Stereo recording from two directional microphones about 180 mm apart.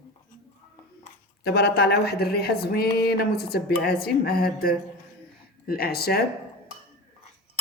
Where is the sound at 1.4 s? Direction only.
65° left (ahead or behind).